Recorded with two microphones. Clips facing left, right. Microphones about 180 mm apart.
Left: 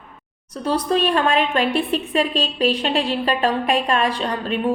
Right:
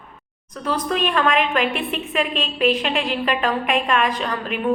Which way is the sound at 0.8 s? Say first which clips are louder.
Left 1 dB; 35° left (ahead or behind).